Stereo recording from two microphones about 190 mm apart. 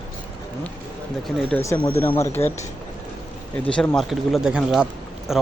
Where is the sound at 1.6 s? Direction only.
15° left (ahead or behind).